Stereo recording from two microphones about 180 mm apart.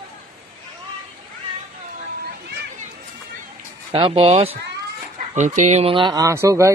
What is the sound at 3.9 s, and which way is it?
Speech, 30° right (ahead or behind).